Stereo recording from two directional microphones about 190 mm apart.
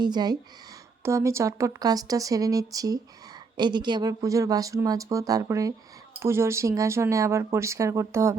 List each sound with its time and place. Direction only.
0.0 s speech: 20° right (ahead or behind)